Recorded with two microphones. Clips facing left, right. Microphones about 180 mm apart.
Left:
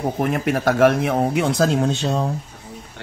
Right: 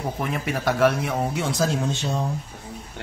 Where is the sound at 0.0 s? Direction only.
50° left (ahead or behind).